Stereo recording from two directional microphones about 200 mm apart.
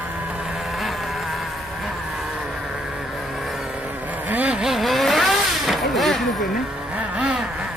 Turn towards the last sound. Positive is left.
turn(degrees=-5)  # may be behind; listen again after turning